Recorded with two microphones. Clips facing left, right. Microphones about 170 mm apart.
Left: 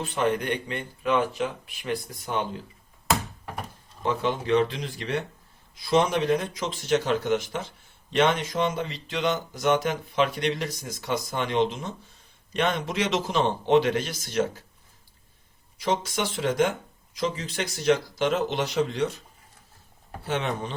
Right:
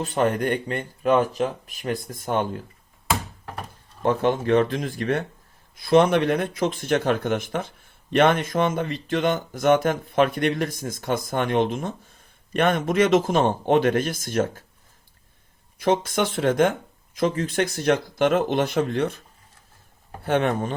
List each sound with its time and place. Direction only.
0.0 s speech: 45° right (ahead or behind)
4.0 s speech: 50° right (ahead or behind)
15.8 s speech: 55° right (ahead or behind)
20.2 s speech: 55° right (ahead or behind)